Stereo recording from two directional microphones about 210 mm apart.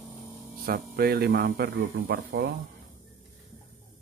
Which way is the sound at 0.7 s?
45° right (ahead or behind).